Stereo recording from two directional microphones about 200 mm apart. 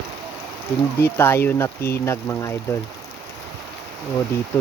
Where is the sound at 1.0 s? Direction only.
10° left (ahead or behind).